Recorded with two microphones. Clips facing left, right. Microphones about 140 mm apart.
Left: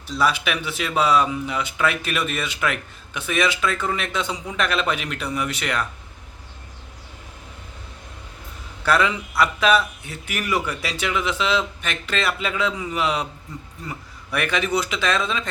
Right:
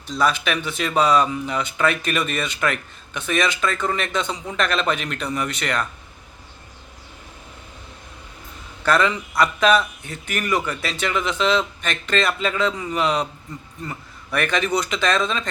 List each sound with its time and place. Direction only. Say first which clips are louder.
0.1 s speech: right 1 dB; 5° left (ahead or behind)
8.8 s speech: right 1 dB; 10° left (ahead or behind)